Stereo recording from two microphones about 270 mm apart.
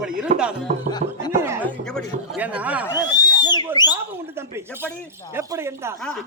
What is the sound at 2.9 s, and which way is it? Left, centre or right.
Speech, centre.